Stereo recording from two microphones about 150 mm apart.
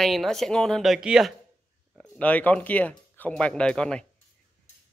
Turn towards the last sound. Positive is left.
turn(degrees=5)  # may be behind; listen again after turning